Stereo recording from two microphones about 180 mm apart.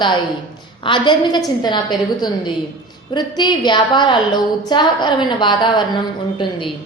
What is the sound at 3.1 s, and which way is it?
A woman's voice, 25° left (ahead or behind).